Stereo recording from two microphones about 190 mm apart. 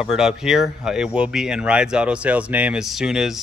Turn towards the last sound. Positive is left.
turn(degrees=-5)  # may be behind; listen again after turning